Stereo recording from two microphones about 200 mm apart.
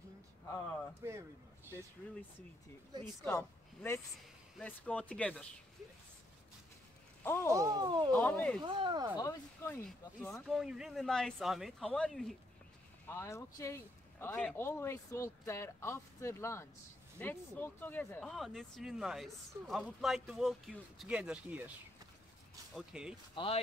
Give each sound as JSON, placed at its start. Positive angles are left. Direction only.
{"t": 3.2, "sound": "speech", "side_deg": 10}
{"t": 7.2, "sound": "speech", "side_deg": 10}
{"t": 7.5, "sound": "a sound", "side_deg": -15}
{"t": 8.1, "sound": "speech", "side_deg": 10}
{"t": 8.6, "sound": "a sound", "side_deg": -25}
{"t": 9.2, "sound": "speech", "side_deg": 10}
{"t": 22.8, "sound": "speech", "side_deg": -5}
{"t": 23.3, "sound": "speech", "side_deg": 25}